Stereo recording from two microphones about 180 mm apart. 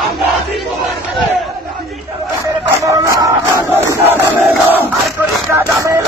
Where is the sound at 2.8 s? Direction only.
15° right (ahead or behind).